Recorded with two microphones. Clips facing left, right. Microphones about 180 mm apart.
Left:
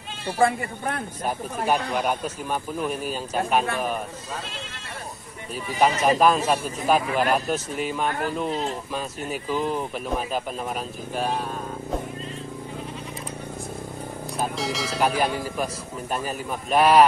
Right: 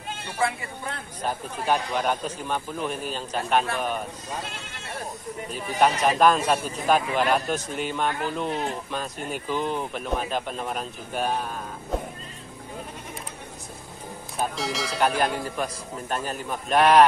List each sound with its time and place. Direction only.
0.4 s speech: 50° left (ahead or behind)
1.2 s speech: 10° left (ahead or behind)
5.8 s speech: centre (ahead or behind)
14.4 s speech: centre (ahead or behind)